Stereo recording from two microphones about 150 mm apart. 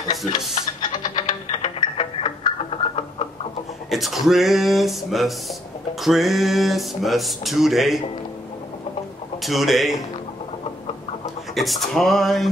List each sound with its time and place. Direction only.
0.8 s music: 30° left (ahead or behind)
3.9 s speech: centre (ahead or behind)
9.4 s speech: centre (ahead or behind)
11.5 s speech: centre (ahead or behind)